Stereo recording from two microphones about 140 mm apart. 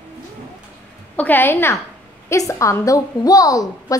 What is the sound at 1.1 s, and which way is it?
A woman's voice, 15° left (ahead or behind).